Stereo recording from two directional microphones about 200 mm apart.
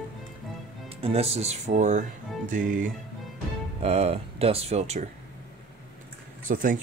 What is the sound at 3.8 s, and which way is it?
Speech, 30° right (ahead or behind).